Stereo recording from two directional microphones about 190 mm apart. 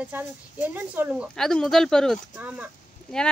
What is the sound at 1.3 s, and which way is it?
Speech, 5° left (ahead or behind).